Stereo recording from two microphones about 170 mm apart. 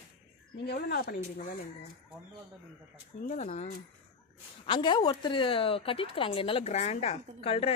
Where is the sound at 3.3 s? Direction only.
45° left (ahead or behind).